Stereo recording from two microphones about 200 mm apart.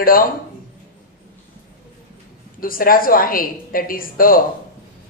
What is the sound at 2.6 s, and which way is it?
A woman's voice, 45° left (ahead or behind).